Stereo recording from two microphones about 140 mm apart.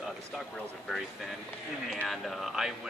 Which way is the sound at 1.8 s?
Centre (ahead or behind).